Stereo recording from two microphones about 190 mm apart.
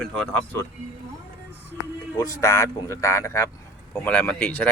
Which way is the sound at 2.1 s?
15° left (ahead or behind).